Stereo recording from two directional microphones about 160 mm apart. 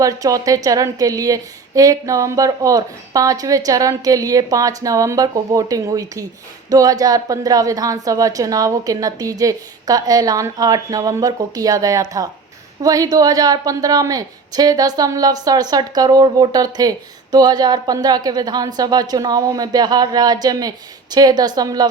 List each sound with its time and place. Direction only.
0.0 s a woman's voice: 20° right (ahead or behind)